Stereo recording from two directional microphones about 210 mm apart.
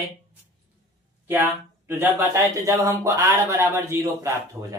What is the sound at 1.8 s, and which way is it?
A man's voice, 10° right (ahead or behind).